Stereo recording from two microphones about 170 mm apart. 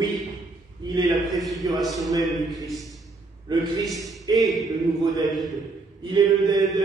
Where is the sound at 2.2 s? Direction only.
Centre (ahead or behind).